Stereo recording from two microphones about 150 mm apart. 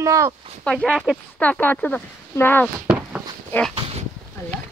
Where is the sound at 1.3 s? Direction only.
10° left (ahead or behind).